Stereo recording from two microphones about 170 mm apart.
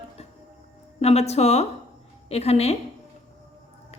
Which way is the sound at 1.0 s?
40° left (ahead or behind).